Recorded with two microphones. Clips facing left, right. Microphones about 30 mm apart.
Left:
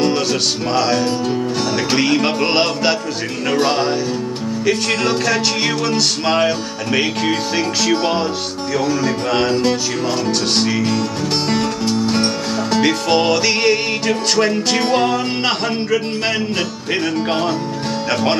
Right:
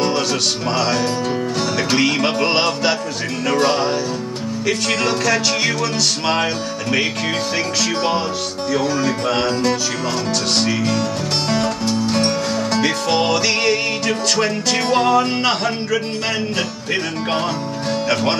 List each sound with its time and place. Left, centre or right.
0.0 s music: left
2.2 s music: centre
4.6 s music: centre
5.3 s music: centre
6.3 s music: centre
8.7 s music: centre
10.7 s music: centre
14.4 s music: centre
18.1 s music: centre